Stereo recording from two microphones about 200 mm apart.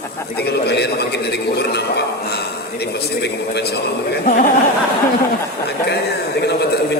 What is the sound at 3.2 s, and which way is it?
Speech, 55° left (ahead or behind).